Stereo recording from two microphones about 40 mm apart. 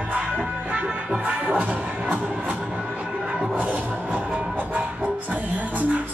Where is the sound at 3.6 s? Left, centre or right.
Right.